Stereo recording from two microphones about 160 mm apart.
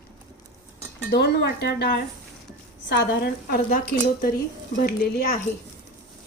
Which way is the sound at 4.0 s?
70° left (ahead or behind).